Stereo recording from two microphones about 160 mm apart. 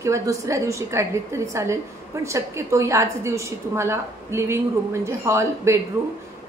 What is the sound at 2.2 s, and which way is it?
A woman's voice, 15° right (ahead or behind).